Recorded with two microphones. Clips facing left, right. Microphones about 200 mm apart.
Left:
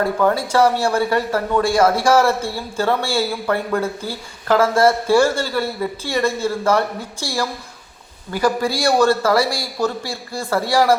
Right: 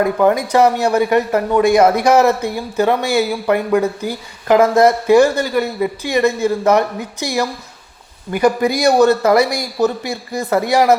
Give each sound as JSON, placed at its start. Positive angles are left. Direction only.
{"t": 0.0, "sound": "a man's voice", "side_deg": -15}